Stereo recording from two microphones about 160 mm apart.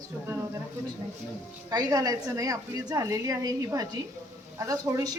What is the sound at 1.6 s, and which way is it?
Speech, 25° right (ahead or behind).